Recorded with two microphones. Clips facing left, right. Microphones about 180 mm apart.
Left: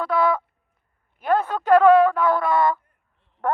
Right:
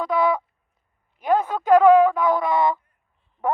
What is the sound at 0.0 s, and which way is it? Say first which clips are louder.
Fowl: even; 15° right (ahead or behind).